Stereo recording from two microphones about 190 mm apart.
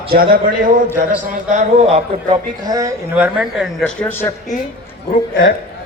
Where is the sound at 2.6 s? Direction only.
20° right (ahead or behind).